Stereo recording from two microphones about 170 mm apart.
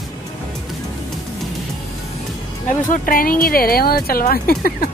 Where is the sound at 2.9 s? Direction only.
55° left (ahead or behind).